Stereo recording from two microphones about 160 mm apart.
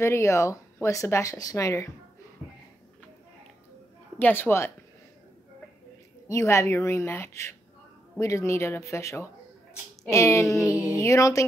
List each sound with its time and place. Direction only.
0.0 s speech: 15° left (ahead or behind)
4.2 s a woman's voice: 15° left (ahead or behind)
6.2 s a woman's voice: 20° left (ahead or behind)